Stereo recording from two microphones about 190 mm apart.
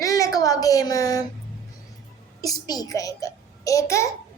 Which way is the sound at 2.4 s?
20° left (ahead or behind).